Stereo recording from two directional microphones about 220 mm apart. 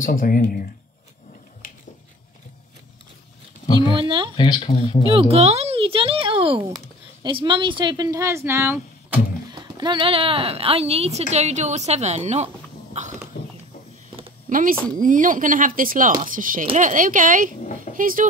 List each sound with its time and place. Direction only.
0.0 s speech: 40° left (ahead or behind)
1.6 s a sound: 40° left (ahead or behind)
3.9 s speech: 25° right (ahead or behind)
4.4 s speech: 25° left (ahead or behind)
5.0 s speech: 25° right (ahead or behind)
14.5 s speech: 40° right (ahead or behind)